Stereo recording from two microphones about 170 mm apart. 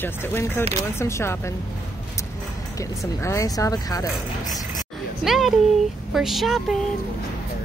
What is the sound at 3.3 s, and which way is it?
Speech, 20° left (ahead or behind).